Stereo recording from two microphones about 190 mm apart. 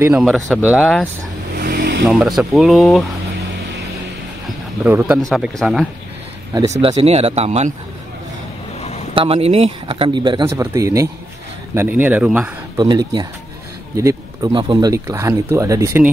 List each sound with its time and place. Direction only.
0.0 s speech: 5° right (ahead or behind)
1.5 s vehicle: 55° right (ahead or behind)
2.0 s speech: centre (ahead or behind)
4.8 s speech: 5° right (ahead or behind)
6.7 s speech: 30° right (ahead or behind)
9.1 s speech: 30° right (ahead or behind); by 12.4 s 10° right (ahead or behind)
12.7 s speech: 20° right (ahead or behind)